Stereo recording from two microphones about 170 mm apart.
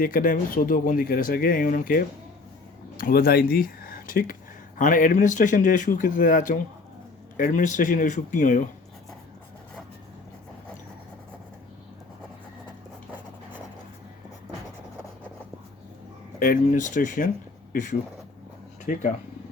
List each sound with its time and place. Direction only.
0.0 s speech: 55° left (ahead or behind)
16.4 s speech: 50° left (ahead or behind)